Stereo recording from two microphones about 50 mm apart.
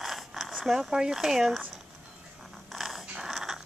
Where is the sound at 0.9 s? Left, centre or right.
Centre.